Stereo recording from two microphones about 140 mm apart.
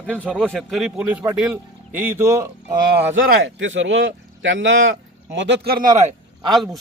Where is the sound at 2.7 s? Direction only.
90° right.